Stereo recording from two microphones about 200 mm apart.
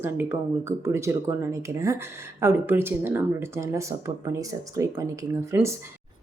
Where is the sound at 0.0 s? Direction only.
10° right (ahead or behind).